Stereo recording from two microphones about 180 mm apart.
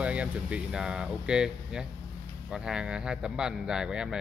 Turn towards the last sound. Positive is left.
turn(degrees=-5)  # may be behind; listen again after turning